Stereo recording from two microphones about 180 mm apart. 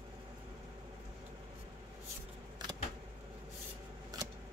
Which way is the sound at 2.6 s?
25° right (ahead or behind).